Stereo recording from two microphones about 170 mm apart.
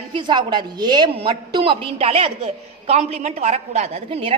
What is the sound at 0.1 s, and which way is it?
A woman's voice, 25° right (ahead or behind).